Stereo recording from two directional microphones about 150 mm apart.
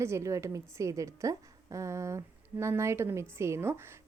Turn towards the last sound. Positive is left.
turn(degrees=-15)  # may be behind; listen again after turning